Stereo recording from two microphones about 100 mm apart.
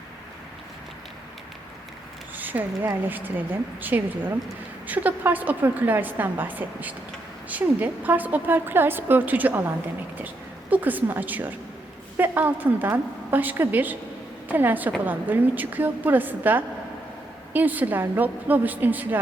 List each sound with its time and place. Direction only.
2.3 s a woman's voice: 20° right (ahead or behind)